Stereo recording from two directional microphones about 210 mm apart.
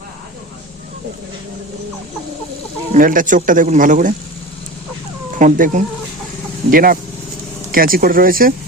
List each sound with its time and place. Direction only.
2.9 s speech: 40° right (ahead or behind)
5.4 s speech: 40° right (ahead or behind)